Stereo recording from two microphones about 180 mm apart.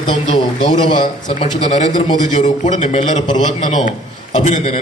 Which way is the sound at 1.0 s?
30° left (ahead or behind).